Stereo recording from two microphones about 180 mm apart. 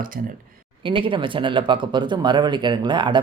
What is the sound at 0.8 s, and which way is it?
Speech, 30° right (ahead or behind).